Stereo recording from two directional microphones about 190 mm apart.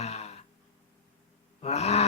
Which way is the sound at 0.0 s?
35° left (ahead or behind).